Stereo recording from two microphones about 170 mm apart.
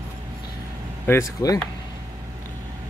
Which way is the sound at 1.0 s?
20° left (ahead or behind).